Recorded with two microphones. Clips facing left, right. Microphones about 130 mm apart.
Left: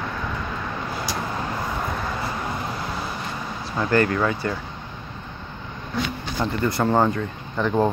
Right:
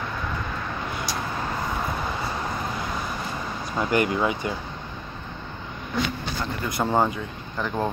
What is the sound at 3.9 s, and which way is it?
Speech, 15° right (ahead or behind).